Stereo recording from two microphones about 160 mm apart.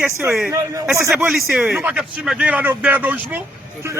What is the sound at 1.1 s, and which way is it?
Speech, centre (ahead or behind).